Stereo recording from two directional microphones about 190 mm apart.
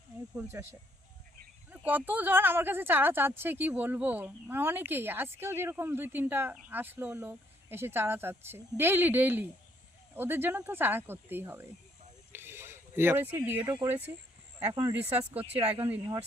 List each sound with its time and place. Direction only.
0.5 s speech: 15° right (ahead or behind)
12.3 s a sound: 10° right (ahead or behind)
13.7 s speech: 15° right (ahead or behind)
15.3 s speech: 30° right (ahead or behind)